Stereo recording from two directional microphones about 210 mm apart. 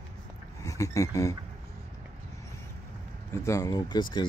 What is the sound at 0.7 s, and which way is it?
Speech, 15° left (ahead or behind).